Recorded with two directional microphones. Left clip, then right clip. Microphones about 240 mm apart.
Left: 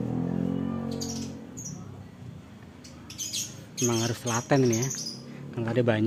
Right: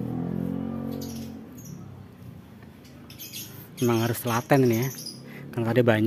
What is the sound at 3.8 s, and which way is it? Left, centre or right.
Speech, centre.